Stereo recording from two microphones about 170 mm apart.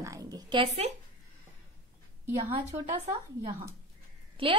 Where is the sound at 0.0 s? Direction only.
20° right (ahead or behind).